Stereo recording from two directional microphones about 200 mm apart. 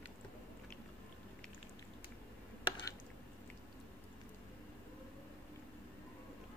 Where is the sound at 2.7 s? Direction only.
20° left (ahead or behind).